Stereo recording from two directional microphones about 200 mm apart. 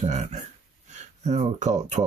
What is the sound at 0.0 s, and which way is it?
Speech, 35° right (ahead or behind).